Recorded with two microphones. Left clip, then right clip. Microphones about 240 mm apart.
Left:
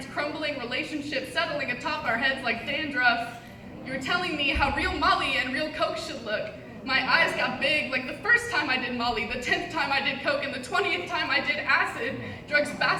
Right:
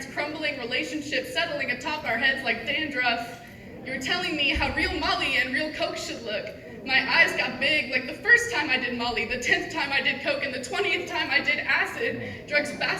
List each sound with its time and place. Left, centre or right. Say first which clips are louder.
0.2 s a woman's voice: right 1 dB; centre
12.5 s a woman's voice: left 2 dB; centre